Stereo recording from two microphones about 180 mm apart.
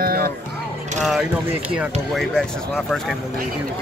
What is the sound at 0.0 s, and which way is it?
Music, 55° right (ahead or behind).